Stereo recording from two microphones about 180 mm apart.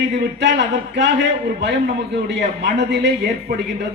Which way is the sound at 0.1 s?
75° right (ahead or behind).